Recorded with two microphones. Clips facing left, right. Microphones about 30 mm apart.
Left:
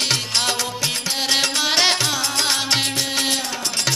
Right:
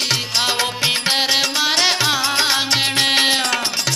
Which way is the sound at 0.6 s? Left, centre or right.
Right.